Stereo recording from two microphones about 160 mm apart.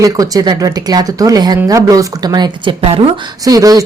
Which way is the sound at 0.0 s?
20° right (ahead or behind).